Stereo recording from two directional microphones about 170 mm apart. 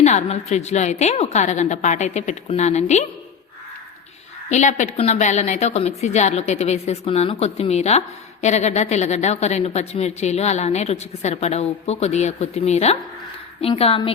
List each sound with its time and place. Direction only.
0.0 s a woman's voice: 40° left (ahead or behind)
4.4 s a woman's voice: 45° left (ahead or behind)